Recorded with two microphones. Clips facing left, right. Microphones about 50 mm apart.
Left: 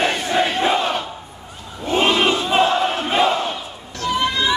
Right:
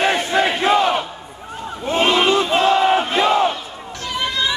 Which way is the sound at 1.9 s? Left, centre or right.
Centre.